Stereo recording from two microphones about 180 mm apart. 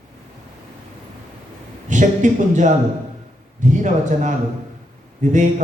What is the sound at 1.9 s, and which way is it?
A man's voice, 45° right (ahead or behind).